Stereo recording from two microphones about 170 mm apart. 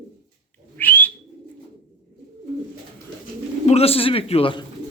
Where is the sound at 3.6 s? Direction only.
35° left (ahead or behind).